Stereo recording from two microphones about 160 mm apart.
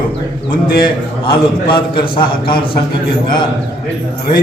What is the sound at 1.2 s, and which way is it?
A man's voice, 30° left (ahead or behind).